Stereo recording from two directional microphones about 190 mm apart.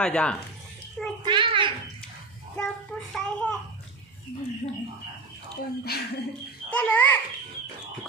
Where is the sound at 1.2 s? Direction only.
25° right (ahead or behind).